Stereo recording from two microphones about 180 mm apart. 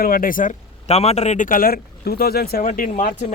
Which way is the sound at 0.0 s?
50° left (ahead or behind).